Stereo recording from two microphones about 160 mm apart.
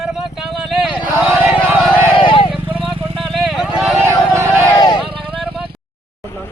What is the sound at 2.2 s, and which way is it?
Vehicle, 35° left (ahead or behind).